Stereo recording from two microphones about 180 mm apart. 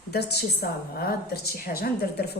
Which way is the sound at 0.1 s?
60° left (ahead or behind).